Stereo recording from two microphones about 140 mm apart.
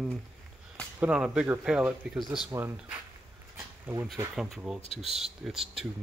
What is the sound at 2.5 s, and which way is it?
Speech, 15° right (ahead or behind).